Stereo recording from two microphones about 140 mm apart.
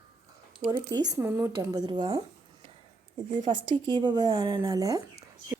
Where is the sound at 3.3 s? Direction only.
35° right (ahead or behind).